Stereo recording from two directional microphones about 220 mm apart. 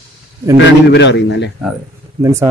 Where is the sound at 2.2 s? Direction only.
15° right (ahead or behind).